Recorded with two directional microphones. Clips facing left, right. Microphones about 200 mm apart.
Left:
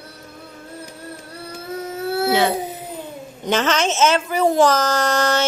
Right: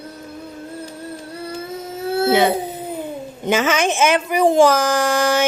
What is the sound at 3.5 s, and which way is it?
Child singing, 10° right (ahead or behind).